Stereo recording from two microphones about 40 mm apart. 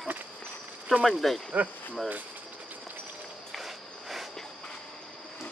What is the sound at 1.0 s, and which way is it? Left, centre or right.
Speech, centre.